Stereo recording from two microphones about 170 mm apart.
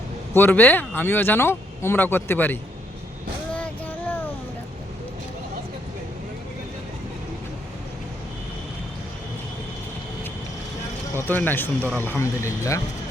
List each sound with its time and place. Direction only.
0.3 s speech: 10° left (ahead or behind)
3.5 s a sound: 10° left (ahead or behind)
11.1 s speech: 10° left (ahead or behind)